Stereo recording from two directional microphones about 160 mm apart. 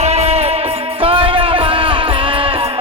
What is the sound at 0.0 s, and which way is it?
Music, 40° right (ahead or behind).